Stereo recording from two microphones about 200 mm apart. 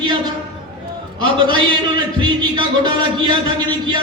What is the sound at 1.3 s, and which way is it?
Music, 25° right (ahead or behind).